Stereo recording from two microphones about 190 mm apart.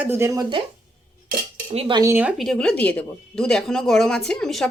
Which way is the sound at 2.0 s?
10° right (ahead or behind).